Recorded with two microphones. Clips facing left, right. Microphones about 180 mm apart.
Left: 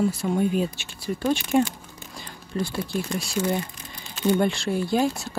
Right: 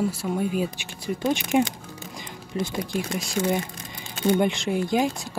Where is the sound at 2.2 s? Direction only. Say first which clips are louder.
Left 1 dB; 15° right (ahead or behind).